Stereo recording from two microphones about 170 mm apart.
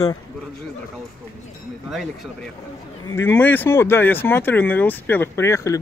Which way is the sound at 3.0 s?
15° left (ahead or behind).